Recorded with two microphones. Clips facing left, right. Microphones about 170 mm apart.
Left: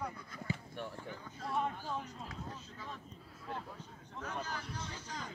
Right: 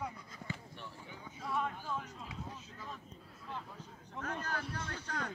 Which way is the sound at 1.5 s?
25° left (ahead or behind).